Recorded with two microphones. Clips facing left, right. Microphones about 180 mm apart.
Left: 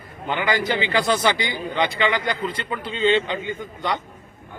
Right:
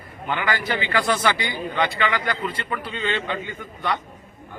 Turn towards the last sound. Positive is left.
turn(degrees=20)  # may be behind; listen again after turning